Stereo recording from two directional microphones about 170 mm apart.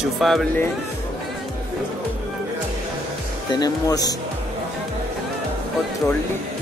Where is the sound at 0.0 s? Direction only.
Centre (ahead or behind).